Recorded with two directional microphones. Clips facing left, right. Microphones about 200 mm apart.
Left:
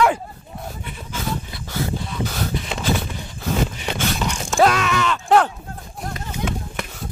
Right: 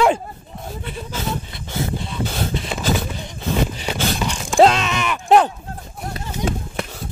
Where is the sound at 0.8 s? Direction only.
30° right (ahead or behind).